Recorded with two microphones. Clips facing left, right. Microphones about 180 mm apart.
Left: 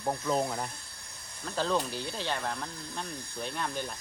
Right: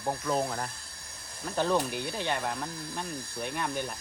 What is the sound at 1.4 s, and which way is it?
Speech, 15° right (ahead or behind).